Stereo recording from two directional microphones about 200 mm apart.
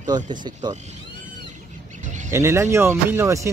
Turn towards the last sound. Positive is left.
turn(degrees=-15)  # may be behind; listen again after turning